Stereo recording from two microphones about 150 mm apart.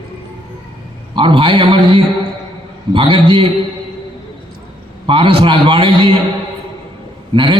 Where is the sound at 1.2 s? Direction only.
35° right (ahead or behind).